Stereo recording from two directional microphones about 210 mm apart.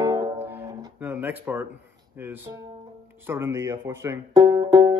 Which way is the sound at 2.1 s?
10° right (ahead or behind).